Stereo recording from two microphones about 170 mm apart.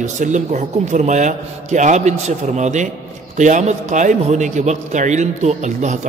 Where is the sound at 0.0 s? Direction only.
45° right (ahead or behind).